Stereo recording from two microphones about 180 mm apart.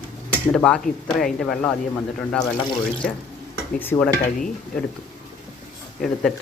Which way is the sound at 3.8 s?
10° left (ahead or behind).